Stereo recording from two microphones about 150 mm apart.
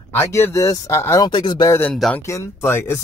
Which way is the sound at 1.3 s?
30° left (ahead or behind).